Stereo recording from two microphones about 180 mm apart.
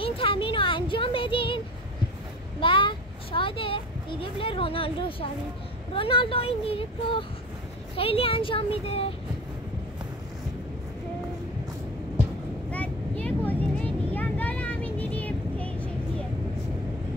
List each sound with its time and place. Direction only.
0.0 s a sound: 30° left (ahead or behind)
2.6 s a child's voice: 30° left (ahead or behind)
12.7 s vehicle: 10° left (ahead or behind)